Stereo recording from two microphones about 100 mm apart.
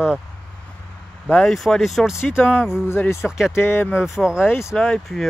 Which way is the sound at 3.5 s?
25° left (ahead or behind).